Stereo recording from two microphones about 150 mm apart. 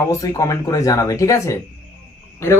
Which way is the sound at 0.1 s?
20° left (ahead or behind).